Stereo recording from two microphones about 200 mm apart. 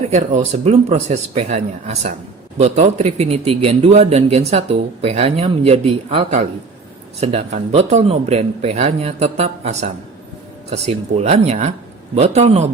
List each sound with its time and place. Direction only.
0.1 s speech: 35° right (ahead or behind)